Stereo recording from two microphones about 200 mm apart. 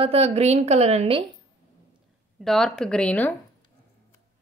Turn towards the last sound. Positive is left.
turn(degrees=5)  # may be behind; listen again after turning